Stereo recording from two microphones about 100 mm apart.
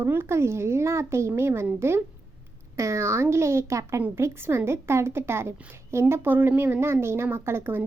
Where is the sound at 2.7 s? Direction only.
30° right (ahead or behind).